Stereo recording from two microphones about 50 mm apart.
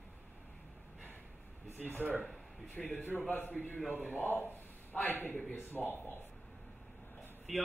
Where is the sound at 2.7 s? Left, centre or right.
Left.